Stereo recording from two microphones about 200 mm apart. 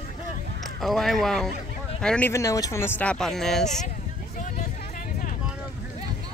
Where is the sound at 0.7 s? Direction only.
Centre (ahead or behind).